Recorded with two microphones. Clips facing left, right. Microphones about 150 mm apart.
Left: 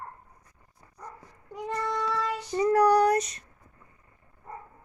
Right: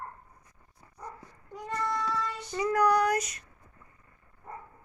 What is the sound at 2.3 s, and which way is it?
A woman's voice, 30° left (ahead or behind).